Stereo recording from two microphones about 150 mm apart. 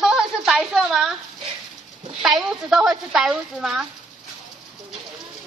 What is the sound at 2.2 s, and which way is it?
A woman's voice, centre (ahead or behind).